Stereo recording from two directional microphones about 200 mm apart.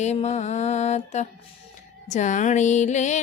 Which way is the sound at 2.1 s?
35° left (ahead or behind).